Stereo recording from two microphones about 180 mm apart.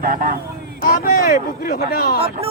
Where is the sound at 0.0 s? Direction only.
50° right (ahead or behind).